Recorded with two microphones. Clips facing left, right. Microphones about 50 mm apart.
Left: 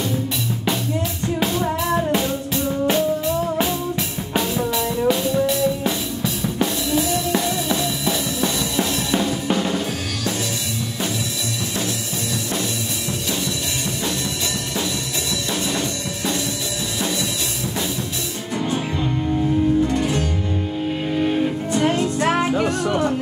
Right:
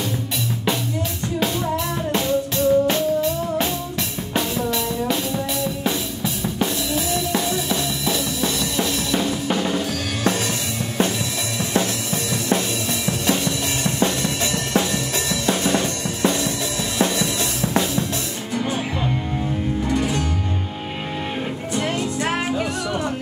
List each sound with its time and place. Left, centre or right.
2.1 s music: centre
4.6 s music: centre
8.7 s drum kit: centre
9.6 s drum kit: centre
13.8 s drum kit: right
15.4 s music: right
22.2 s music: left